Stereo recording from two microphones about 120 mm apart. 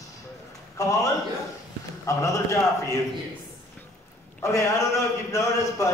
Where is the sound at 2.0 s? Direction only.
25° left (ahead or behind).